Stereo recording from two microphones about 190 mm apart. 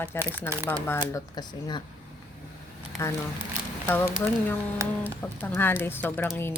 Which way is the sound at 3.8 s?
10° left (ahead or behind).